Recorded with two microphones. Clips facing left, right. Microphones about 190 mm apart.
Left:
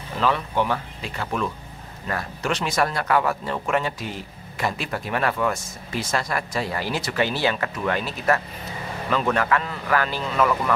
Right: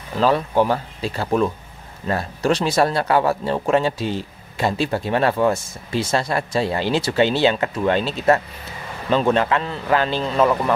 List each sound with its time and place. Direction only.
0.2 s speech: 35° right (ahead or behind)